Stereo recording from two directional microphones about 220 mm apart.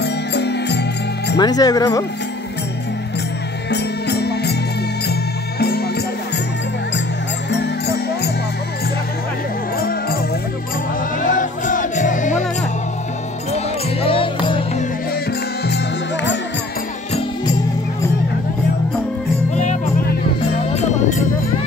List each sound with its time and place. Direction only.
0.0 s music: 50° left (ahead or behind)
1.3 s speech: 15° left (ahead or behind)
3.7 s music: 50° left (ahead or behind)
5.6 s music: 45° left (ahead or behind)
7.5 s music: 50° left (ahead or behind)
9.8 s music: 40° left (ahead or behind)
11.2 s music: 35° left (ahead or behind)
14.0 s music: 25° left (ahead or behind)
19.5 s music: 30° left (ahead or behind)